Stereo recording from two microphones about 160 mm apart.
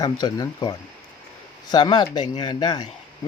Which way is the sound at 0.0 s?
25° left (ahead or behind).